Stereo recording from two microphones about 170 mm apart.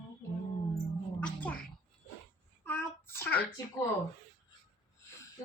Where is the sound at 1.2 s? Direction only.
5° left (ahead or behind).